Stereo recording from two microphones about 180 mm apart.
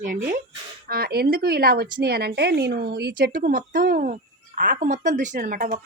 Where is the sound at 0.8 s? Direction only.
55° right (ahead or behind).